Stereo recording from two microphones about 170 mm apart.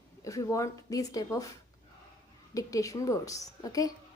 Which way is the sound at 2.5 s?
20° left (ahead or behind).